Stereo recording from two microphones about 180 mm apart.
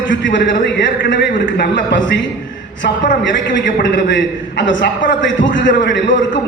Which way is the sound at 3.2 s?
90° left.